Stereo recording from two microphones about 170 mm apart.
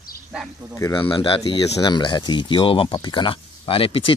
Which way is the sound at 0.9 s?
30° left (ahead or behind).